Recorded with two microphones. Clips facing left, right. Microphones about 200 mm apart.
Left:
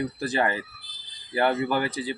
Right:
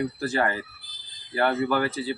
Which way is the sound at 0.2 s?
20° left (ahead or behind).